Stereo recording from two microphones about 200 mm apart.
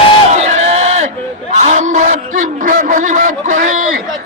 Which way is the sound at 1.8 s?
40° right (ahead or behind).